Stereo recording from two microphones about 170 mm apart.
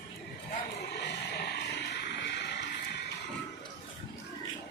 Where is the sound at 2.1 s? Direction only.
80° left.